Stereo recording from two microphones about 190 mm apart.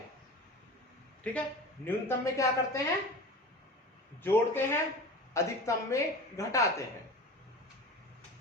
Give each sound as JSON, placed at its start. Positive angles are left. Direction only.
{"t": 1.2, "sound": "a man's voice", "side_deg": 5}
{"t": 4.2, "sound": "a man's voice", "side_deg": 10}